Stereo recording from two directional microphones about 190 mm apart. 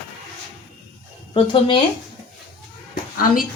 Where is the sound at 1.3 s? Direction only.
25° left (ahead or behind).